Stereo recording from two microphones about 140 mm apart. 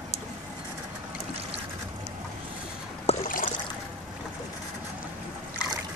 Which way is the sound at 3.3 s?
75° left (ahead or behind).